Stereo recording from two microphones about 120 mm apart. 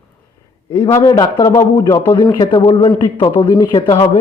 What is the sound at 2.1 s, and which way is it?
A man's voice, 40° left (ahead or behind).